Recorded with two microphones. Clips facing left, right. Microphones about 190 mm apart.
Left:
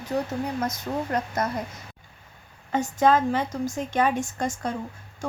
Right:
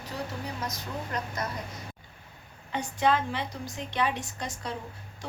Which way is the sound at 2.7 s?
45° left (ahead or behind).